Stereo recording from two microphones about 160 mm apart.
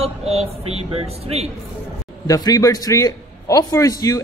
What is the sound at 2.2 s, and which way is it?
A man's voice, 20° left (ahead or behind).